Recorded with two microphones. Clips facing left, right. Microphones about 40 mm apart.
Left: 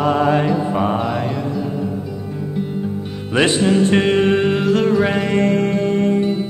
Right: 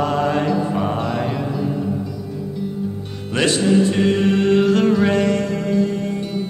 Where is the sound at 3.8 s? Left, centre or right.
Left.